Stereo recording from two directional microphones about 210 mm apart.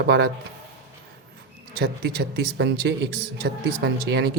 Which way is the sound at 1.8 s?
50° right (ahead or behind).